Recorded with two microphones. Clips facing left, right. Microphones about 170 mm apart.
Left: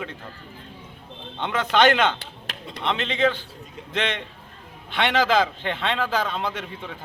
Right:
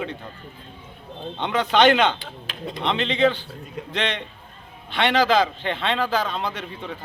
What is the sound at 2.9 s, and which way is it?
Speech, 5° left (ahead or behind).